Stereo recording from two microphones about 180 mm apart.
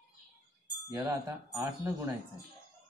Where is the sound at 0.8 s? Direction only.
15° right (ahead or behind).